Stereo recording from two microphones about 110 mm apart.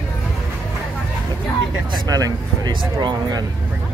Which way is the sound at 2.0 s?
35° right (ahead or behind).